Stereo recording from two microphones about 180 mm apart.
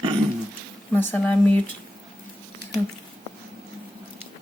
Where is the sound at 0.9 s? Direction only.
10° left (ahead or behind).